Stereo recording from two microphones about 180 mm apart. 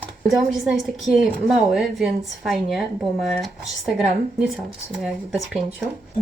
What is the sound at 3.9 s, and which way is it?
A woman's voice, centre (ahead or behind).